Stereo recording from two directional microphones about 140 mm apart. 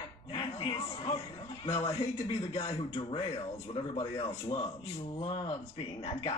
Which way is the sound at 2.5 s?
45° left (ahead or behind).